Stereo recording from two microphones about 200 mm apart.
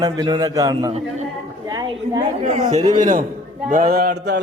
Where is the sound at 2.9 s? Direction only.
40° right (ahead or behind); by 4.4 s 55° right (ahead or behind).